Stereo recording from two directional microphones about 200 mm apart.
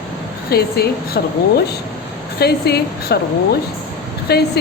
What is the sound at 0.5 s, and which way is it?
Speech, 50° left (ahead or behind).